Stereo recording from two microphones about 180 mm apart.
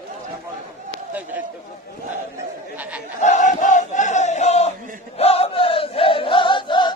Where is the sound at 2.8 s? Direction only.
5° right (ahead or behind).